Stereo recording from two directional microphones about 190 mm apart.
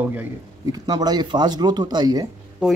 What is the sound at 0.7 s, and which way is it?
Speech, 20° right (ahead or behind).